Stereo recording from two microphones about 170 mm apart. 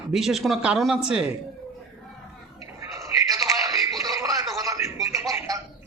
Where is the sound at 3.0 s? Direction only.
20° right (ahead or behind).